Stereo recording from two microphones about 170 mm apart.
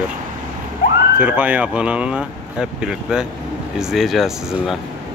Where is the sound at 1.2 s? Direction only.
10° right (ahead or behind).